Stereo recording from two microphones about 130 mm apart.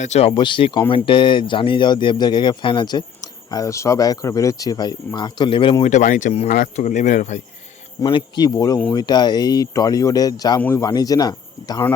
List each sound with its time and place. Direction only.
0.0 s speech: 55° left (ahead or behind)
0.3 s speech: 40° left (ahead or behind)
5.8 s speech: 65° left (ahead or behind)
8.1 s speech: 30° left (ahead or behind)